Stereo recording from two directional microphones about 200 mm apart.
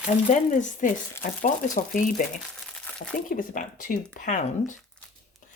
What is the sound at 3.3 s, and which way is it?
Speech, 40° left (ahead or behind).